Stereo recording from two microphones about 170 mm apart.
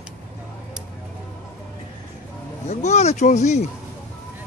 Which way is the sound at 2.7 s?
40° left (ahead or behind).